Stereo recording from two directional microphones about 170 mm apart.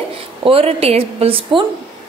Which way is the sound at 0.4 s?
35° right (ahead or behind).